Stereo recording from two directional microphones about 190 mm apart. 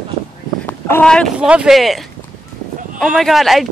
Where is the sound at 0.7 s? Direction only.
10° left (ahead or behind).